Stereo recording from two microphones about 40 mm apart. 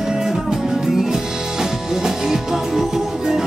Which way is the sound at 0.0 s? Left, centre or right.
Centre.